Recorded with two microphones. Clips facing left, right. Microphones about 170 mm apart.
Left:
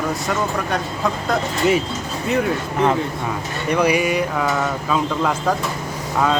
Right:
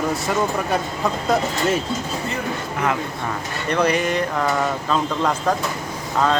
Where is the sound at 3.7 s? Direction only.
10° left (ahead or behind).